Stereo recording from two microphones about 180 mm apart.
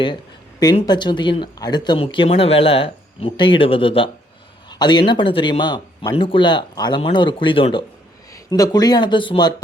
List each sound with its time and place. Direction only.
0.8 s speech: 25° left (ahead or behind)